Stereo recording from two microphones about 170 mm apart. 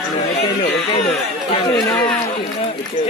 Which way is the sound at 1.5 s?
25° left (ahead or behind).